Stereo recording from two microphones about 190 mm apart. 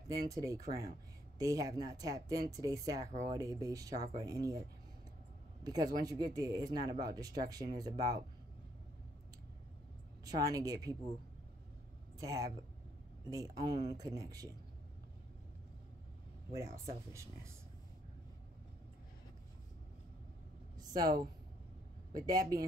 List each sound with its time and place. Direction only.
0.1 s speech: 15° right (ahead or behind)
10.2 s speech: 20° right (ahead or behind)
12.2 s speech: 20° right (ahead or behind)
16.5 s speech: 15° right (ahead or behind)
22.1 s speech: 20° right (ahead or behind)